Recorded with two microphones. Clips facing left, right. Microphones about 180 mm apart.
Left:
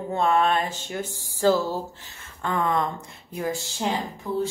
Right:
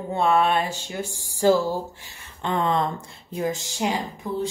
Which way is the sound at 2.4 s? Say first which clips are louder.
Right 1 dB; 25° right (ahead or behind).